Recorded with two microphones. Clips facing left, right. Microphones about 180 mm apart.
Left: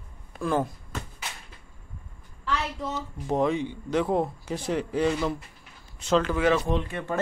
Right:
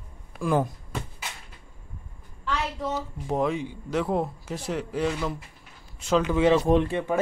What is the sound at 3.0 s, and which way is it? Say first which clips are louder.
Speech: left 3 dB; 5° right (ahead or behind).